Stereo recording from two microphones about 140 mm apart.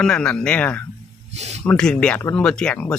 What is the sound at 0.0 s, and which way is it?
Speech, 5° left (ahead or behind).